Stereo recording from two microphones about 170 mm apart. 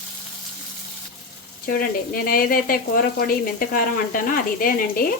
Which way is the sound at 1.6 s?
60° left (ahead or behind).